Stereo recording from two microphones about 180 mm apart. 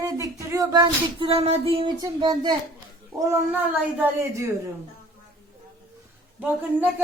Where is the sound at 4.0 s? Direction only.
15° right (ahead or behind).